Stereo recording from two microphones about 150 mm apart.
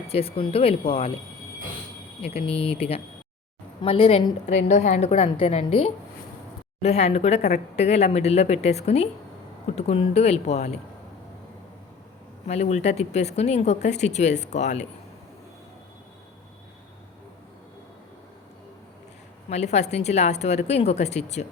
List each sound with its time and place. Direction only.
0.1 s speech: 40° left (ahead or behind)
2.2 s speech: 40° left (ahead or behind)
4.7 s speech: 50° left (ahead or behind)
12.5 s speech: 50° left (ahead or behind)
19.5 s speech: 50° left (ahead or behind)